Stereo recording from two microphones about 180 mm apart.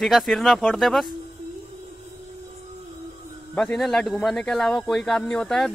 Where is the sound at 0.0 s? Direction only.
Centre (ahead or behind).